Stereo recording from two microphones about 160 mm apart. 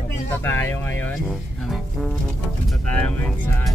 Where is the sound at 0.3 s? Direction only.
15° left (ahead or behind).